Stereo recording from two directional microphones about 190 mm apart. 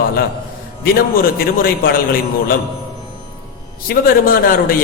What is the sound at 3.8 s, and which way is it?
Speech, 50° left (ahead or behind).